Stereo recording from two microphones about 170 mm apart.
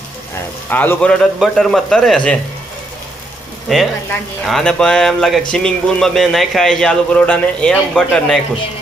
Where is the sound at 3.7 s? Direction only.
Centre (ahead or behind).